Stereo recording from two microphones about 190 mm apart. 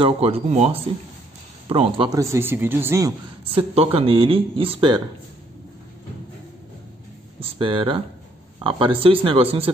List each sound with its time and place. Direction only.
0.0 s a man's voice: 30° right (ahead or behind)
3.7 s speech: 30° right (ahead or behind)
7.3 s speech: 30° right (ahead or behind)